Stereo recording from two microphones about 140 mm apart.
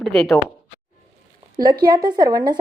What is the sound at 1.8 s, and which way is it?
Speech, 30° right (ahead or behind).